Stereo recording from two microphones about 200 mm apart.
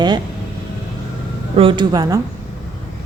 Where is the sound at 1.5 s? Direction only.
25° right (ahead or behind).